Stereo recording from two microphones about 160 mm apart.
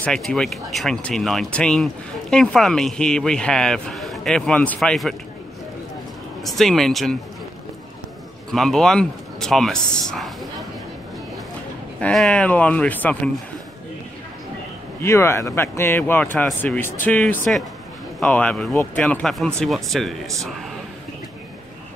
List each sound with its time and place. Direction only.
0.0 s a man's voice: 5° left (ahead or behind)
6.4 s a man's voice: centre (ahead or behind)
8.5 s a man's voice: centre (ahead or behind)
12.0 s speech: 5° left (ahead or behind)
15.0 s a man's voice: 15° left (ahead or behind); by 20.2 s centre (ahead or behind)